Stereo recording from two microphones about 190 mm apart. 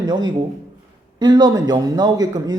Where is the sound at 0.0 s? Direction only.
20° right (ahead or behind).